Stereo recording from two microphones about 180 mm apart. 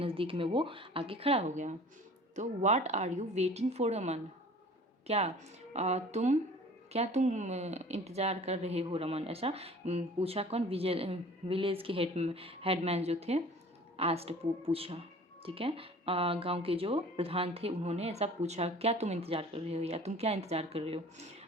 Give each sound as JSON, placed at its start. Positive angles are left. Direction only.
{"t": 0.0, "sound": "speech", "side_deg": -30}